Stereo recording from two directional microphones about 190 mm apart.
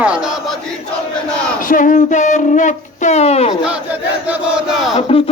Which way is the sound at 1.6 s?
45° left (ahead or behind).